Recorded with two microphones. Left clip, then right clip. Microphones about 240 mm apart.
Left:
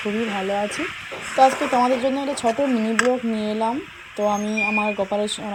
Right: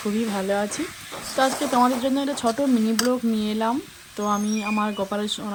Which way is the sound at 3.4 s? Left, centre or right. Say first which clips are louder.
Left 2 dB; right.